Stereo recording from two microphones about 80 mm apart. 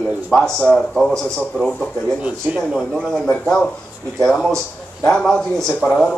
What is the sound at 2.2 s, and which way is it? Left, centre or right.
Speech, centre.